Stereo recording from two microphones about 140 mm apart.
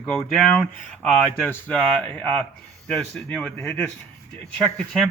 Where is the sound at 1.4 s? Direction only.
15° left (ahead or behind).